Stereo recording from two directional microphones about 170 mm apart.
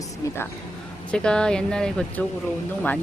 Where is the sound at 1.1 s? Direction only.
5° left (ahead or behind).